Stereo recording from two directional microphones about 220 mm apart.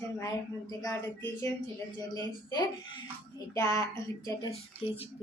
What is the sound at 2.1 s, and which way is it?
A woman's voice, 15° left (ahead or behind).